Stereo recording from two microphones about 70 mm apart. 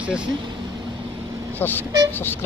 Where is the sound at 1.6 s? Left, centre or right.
Left.